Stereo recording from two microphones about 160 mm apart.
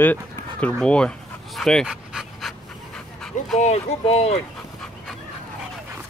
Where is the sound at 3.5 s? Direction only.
45° left (ahead or behind).